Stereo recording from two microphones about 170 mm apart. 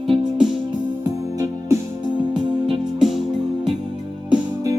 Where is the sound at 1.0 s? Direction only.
20° right (ahead or behind).